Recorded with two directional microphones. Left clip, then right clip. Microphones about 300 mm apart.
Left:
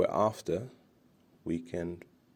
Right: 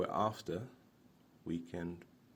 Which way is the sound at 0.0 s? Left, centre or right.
Left.